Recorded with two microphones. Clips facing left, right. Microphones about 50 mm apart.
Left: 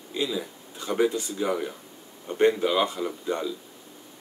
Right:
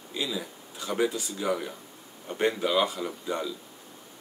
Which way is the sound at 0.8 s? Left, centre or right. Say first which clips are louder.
Left 3 dB; centre.